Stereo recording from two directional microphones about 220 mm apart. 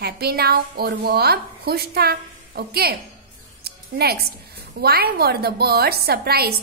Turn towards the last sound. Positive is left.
turn(degrees=-45)  # may be behind; listen again after turning